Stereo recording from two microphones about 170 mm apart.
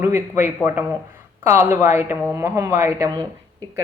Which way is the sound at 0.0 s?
15° right (ahead or behind).